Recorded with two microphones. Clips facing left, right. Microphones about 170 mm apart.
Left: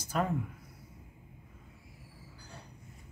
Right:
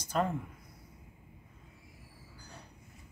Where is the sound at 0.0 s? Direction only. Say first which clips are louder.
Right 1 dB; 5° left (ahead or behind).